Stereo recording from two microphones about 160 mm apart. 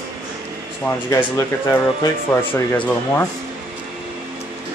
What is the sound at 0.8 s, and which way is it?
Speech, 15° left (ahead or behind).